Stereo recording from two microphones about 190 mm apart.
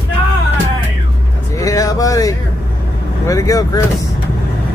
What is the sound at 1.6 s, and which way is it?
Vehicle, 15° left (ahead or behind).